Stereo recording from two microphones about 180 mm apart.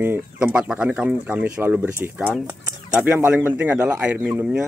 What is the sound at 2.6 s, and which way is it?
Bird, 15° right (ahead or behind).